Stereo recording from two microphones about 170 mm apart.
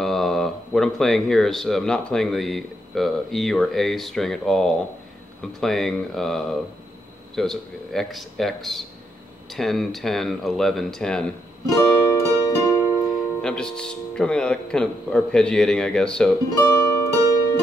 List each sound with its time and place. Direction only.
0.0 s speech: centre (ahead or behind)
12.1 s music: 15° left (ahead or behind)
12.9 s speech: centre (ahead or behind)
16.6 s music: 15° left (ahead or behind)